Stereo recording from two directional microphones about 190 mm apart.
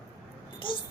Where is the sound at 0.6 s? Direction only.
25° left (ahead or behind).